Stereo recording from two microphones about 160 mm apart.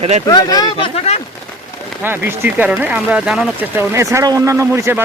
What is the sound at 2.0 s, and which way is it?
Speech, 15° right (ahead or behind).